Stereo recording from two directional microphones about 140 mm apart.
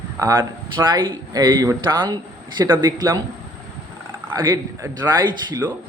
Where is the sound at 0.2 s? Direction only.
20° right (ahead or behind).